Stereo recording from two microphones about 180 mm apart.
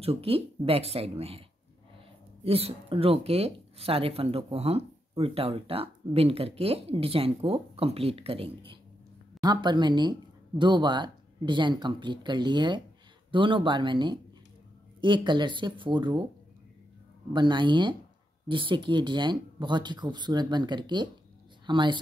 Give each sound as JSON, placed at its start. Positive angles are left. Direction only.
{"t": 0.0, "sound": "speech", "side_deg": -35}
{"t": 2.4, "sound": "speech", "side_deg": -35}
{"t": 17.3, "sound": "speech", "side_deg": -25}